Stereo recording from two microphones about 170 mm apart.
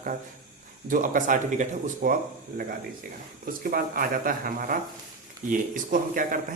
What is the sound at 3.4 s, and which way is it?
Speech, 55° right (ahead or behind).